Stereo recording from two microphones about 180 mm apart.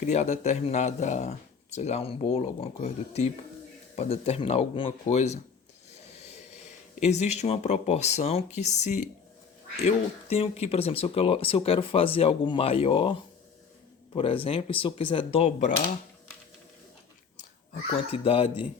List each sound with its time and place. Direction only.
0.0 s speech: 40° left (ahead or behind)
6.1 s vehicle: 35° left (ahead or behind)
7.0 s speech: 40° left (ahead or behind)
17.9 s speech: 30° left (ahead or behind)